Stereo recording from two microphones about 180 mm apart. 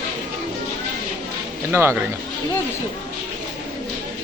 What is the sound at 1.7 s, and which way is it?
Speech, 15° right (ahead or behind).